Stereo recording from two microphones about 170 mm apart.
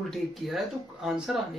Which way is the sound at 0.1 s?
Centre (ahead or behind).